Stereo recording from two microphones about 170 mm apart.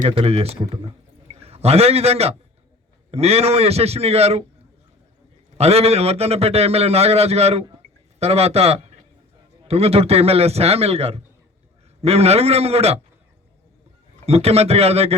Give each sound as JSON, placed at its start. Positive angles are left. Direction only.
{"t": 0.1, "sound": "a man's voice", "side_deg": -35}
{"t": 5.5, "sound": "a man's voice", "side_deg": -40}
{"t": 14.3, "sound": "a man's voice", "side_deg": -35}